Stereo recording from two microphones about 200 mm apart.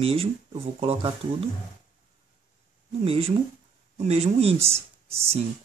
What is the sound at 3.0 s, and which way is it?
Speech, 30° right (ahead or behind).